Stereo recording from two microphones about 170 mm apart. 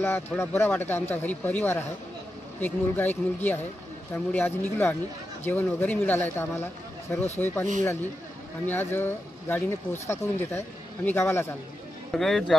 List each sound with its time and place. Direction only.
0.0 s speech: 15° left (ahead or behind)
8.6 s speech: 10° left (ahead or behind)
12.1 s speech: centre (ahead or behind)